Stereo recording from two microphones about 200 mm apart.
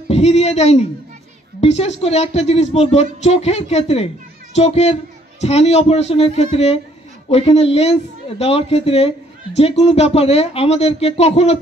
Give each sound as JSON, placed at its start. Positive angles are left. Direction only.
{"t": 0.1, "sound": "a woman's voice", "side_deg": 30}